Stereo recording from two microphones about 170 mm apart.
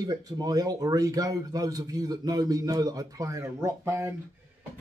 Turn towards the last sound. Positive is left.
turn(degrees=-15)  # may be behind; listen again after turning